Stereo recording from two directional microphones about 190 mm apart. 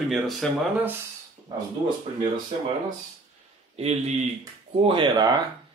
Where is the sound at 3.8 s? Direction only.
35° right (ahead or behind).